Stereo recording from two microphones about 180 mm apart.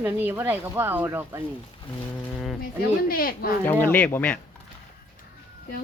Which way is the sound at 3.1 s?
55° left (ahead or behind).